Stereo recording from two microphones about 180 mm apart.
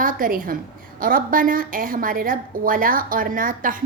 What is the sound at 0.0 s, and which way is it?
A woman's voice, 50° right (ahead or behind).